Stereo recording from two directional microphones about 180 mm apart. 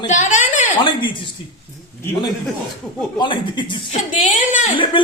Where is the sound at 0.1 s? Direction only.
40° left (ahead or behind).